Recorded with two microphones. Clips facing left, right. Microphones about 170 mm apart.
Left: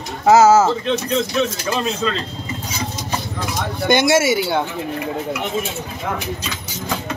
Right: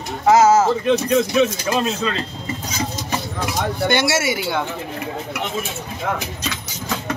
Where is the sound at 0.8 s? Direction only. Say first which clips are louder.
Right 3 dB; 10° right (ahead or behind).